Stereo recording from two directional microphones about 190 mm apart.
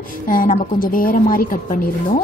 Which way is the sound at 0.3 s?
45° left (ahead or behind).